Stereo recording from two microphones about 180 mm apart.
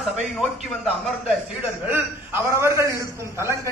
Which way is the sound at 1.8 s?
10° right (ahead or behind).